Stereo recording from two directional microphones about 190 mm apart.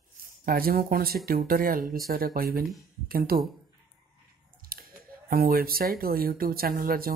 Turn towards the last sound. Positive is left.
turn(degrees=-50)  # may be behind; listen again after turning